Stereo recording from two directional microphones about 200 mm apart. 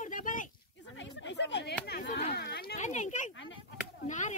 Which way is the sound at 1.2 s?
60° left (ahead or behind).